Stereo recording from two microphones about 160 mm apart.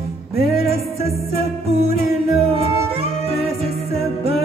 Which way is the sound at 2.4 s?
40° right (ahead or behind).